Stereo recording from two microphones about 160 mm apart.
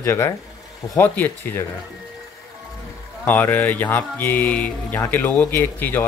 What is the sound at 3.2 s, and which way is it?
Speech, 10° left (ahead or behind).